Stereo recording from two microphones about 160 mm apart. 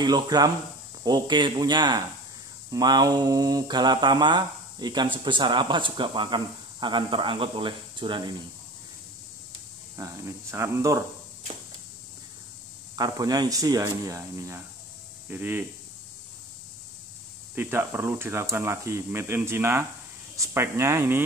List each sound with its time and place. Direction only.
0.0 s mantra: 25° right (ahead or behind)
9.9 s mantra: 20° right (ahead or behind)
12.9 s mantra: 20° right (ahead or behind)
15.2 s speech: 10° right (ahead or behind)
17.6 s speech: 15° right (ahead or behind)